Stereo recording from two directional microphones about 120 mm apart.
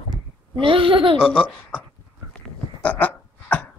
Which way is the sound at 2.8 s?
15° left (ahead or behind).